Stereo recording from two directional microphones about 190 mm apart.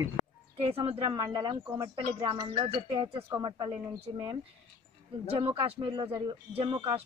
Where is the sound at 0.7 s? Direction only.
30° right (ahead or behind).